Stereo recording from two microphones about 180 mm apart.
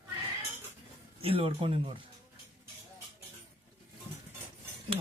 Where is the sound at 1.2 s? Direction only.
30° right (ahead or behind).